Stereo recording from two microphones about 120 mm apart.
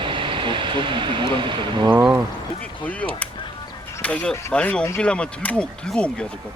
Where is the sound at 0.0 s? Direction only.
45° right (ahead or behind).